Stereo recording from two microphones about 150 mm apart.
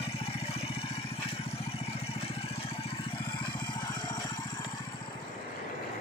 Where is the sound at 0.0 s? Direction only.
40° left (ahead or behind).